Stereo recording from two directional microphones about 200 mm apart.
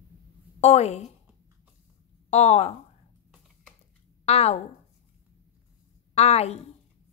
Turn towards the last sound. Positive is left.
turn(degrees=30)  # may be behind; listen again after turning